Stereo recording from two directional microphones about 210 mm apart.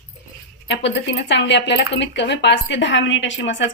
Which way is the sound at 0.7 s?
60° left (ahead or behind).